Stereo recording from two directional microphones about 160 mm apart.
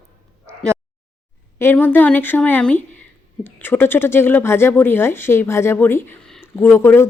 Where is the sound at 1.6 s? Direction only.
10° left (ahead or behind).